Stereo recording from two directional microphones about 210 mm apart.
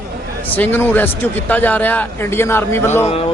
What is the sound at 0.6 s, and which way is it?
Speech, 10° left (ahead or behind).